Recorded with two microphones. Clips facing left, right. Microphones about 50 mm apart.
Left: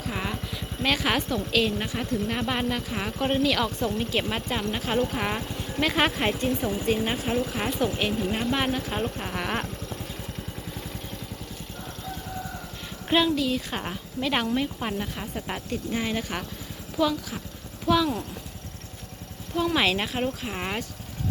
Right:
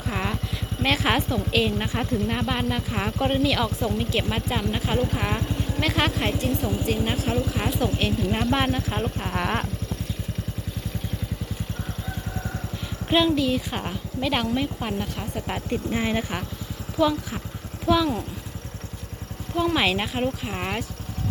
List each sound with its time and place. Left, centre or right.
0.1 s a sound: centre
1.9 s speech: centre
2.1 s speech: centre
8.3 s speech: centre
13.1 s speech: centre
15.7 s a woman's voice: right
17.8 s speech: centre
19.5 s speech: centre